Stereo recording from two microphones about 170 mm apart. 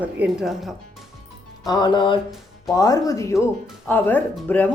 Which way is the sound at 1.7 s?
25° left (ahead or behind).